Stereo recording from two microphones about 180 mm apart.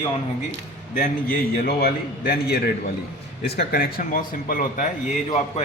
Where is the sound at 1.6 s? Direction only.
60° left (ahead or behind).